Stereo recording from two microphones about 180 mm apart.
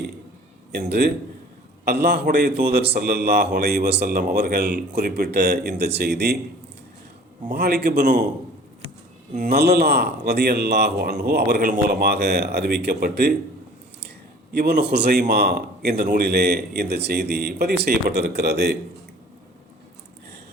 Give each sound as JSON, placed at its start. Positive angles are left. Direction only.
{"t": 0.9, "sound": "a man's voice", "side_deg": -65}
{"t": 2.2, "sound": "a man's voice", "side_deg": -50}
{"t": 2.6, "sound": "speech", "side_deg": -60}
{"t": 7.4, "sound": "speech", "side_deg": -60}
{"t": 7.9, "sound": "a man's voice", "side_deg": -45}
{"t": 9.5, "sound": "speech", "side_deg": -65}
{"t": 14.5, "sound": "a man's voice", "side_deg": -65}